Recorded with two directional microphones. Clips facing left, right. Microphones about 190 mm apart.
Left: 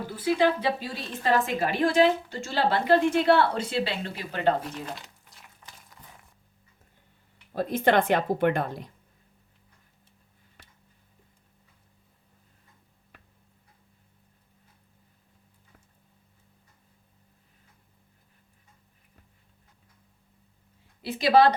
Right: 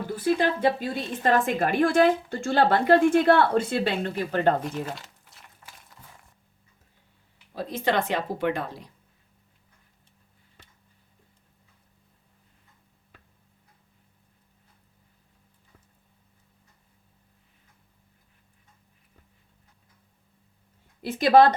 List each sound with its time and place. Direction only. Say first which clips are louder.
0.3 s a woman's voice: even; 50° right (ahead or behind)
4.6 s crumpling: right 4 dB; centre (ahead or behind)
7.5 s a woman's voice: left 3 dB; 50° left (ahead or behind)
21.0 s speech: right 3 dB; 50° right (ahead or behind)